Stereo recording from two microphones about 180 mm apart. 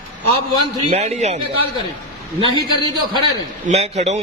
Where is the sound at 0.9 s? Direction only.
35° right (ahead or behind).